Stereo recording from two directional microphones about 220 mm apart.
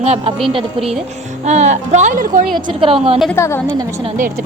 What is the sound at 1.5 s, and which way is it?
Speech, 30° right (ahead or behind).